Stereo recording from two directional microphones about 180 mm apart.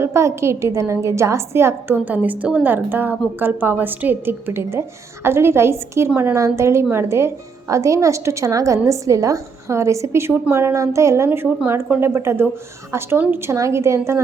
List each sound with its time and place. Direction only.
0.0 s a woman's voice: 15° right (ahead or behind)